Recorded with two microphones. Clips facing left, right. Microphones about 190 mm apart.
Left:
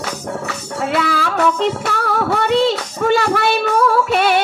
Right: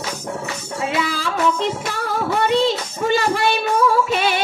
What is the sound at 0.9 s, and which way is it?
Music, 60° left (ahead or behind).